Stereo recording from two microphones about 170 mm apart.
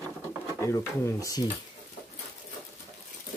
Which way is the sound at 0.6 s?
15° left (ahead or behind).